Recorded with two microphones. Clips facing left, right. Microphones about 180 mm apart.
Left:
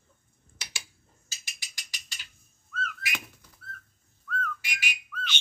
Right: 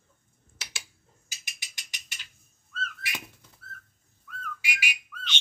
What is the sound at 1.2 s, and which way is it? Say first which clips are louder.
Mechanisms: right 1 dB; 20° right (ahead or behind).